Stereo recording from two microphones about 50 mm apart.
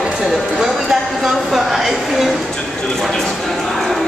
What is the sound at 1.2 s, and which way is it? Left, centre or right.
Speech, centre.